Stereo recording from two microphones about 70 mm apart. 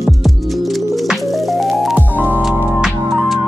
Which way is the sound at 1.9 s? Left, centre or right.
Right.